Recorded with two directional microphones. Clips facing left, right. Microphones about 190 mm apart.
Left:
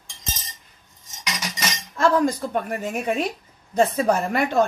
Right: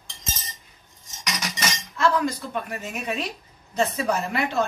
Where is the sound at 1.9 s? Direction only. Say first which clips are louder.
Left 4 dB; 45° left (ahead or behind).